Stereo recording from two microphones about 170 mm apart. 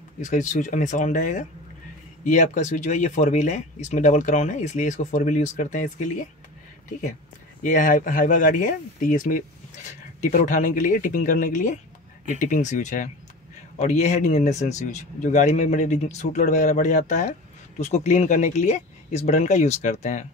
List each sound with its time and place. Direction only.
0.2 s speech: 45° left (ahead or behind)
7.6 s speech: 50° left (ahead or behind)